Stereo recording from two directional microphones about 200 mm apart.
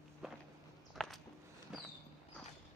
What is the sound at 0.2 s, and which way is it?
Walk, centre (ahead or behind).